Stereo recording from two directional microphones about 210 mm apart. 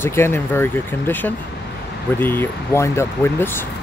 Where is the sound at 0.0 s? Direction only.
10° left (ahead or behind).